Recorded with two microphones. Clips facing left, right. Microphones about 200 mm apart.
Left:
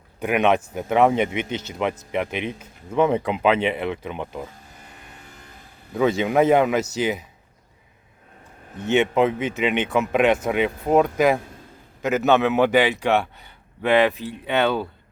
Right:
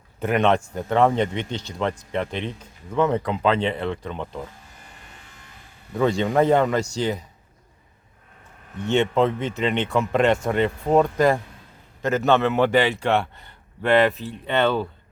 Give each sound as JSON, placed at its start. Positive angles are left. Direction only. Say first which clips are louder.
{"t": 0.2, "sound": "speech", "louder": "even", "side_deg": 15}
{"t": 5.9, "sound": "speech", "louder": "left 1 dB", "side_deg": 5}
{"t": 9.6, "sound": "speech", "louder": "even", "side_deg": 5}